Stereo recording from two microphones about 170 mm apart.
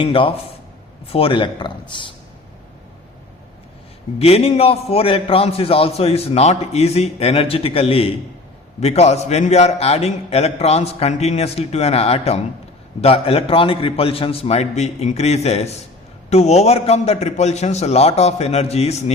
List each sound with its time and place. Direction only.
0.0 s a man's voice: 30° left (ahead or behind)
4.2 s a man's voice: 35° left (ahead or behind)